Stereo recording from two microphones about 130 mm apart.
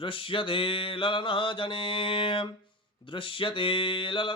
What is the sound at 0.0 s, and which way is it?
Mantra, 40° left (ahead or behind).